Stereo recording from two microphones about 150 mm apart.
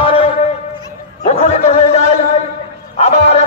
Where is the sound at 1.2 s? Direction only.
45° left (ahead or behind).